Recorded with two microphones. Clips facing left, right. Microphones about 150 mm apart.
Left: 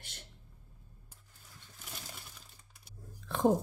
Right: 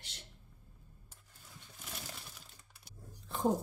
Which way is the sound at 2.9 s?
80° left.